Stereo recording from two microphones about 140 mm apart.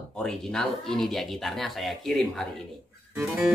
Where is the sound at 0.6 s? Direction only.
5° left (ahead or behind).